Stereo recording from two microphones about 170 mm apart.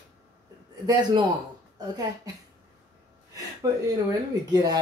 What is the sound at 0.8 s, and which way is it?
Speech, 25° right (ahead or behind).